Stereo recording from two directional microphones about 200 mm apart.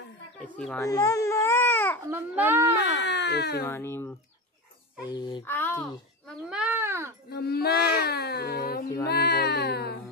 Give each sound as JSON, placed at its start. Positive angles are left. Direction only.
{"t": 0.4, "sound": "bird", "side_deg": 5}
{"t": 0.7, "sound": "baby cry", "side_deg": 15}
{"t": 2.0, "sound": "speech", "side_deg": -10}
{"t": 3.0, "sound": "speech", "side_deg": 60}
{"t": 3.6, "sound": "a child's voice", "side_deg": 10}
{"t": 5.4, "sound": "a sound", "side_deg": 10}
{"t": 6.5, "sound": "baby cry", "side_deg": -5}
{"t": 7.2, "sound": "a sound", "side_deg": 50}
{"t": 9.0, "sound": "cat", "side_deg": 50}